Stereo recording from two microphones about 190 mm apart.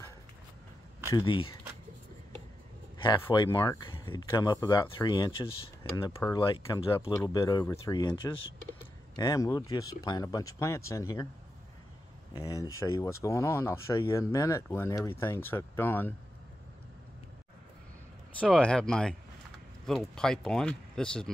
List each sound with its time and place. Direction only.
1.1 s speech: 25° left (ahead or behind)
3.4 s speech: 15° left (ahead or behind)
12.4 s speech: 15° left (ahead or behind)
18.4 s speech: 5° left (ahead or behind)